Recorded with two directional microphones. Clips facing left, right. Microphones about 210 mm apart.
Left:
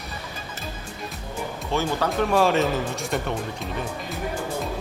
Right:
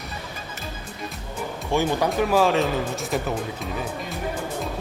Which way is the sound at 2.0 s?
5° right (ahead or behind).